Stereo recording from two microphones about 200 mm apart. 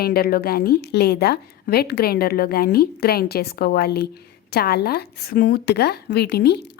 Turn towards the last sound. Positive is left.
turn(degrees=55)  # may be behind; listen again after turning